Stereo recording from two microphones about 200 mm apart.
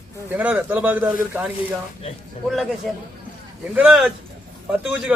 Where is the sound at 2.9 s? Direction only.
Centre (ahead or behind).